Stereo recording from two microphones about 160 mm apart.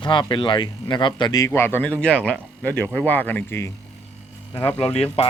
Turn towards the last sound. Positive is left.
turn(degrees=40)  # may be behind; listen again after turning